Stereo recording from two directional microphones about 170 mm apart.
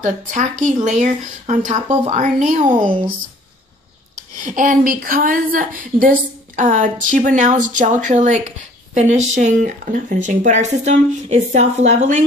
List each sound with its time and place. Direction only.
0.0 s a woman's voice: 45° right (ahead or behind)
2.8 s speech: 30° right (ahead or behind)
4.4 s a woman's voice: 50° right (ahead or behind)